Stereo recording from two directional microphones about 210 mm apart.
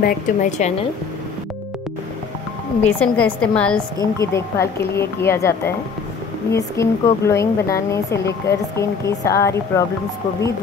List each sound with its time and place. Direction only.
0.0 s a woman's voice: 35° left (ahead or behind)
2.8 s a woman's voice: 5° left (ahead or behind)